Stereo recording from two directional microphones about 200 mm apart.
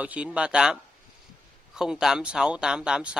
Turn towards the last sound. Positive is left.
turn(degrees=-5)  # may be behind; listen again after turning